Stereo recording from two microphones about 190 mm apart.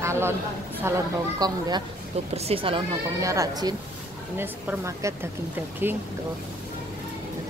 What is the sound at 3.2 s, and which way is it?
Speech, 15° right (ahead or behind).